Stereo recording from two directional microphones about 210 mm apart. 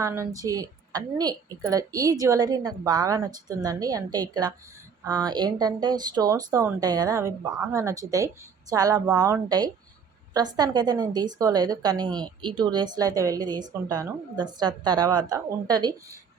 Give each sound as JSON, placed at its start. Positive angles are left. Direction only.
{"t": 0.0, "sound": "a woman's voice", "side_deg": -10}